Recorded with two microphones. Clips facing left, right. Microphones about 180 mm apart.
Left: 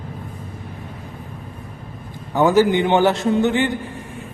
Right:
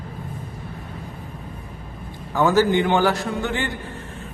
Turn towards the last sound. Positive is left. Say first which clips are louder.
# left 8 dB
turn(degrees=20)  # may be behind; listen again after turning